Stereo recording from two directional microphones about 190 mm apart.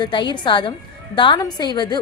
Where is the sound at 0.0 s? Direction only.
25° left (ahead or behind).